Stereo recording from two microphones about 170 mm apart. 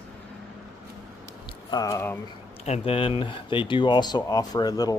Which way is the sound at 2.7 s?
35° left (ahead or behind).